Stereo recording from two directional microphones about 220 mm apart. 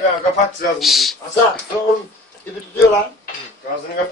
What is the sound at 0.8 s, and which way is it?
Speech, centre (ahead or behind).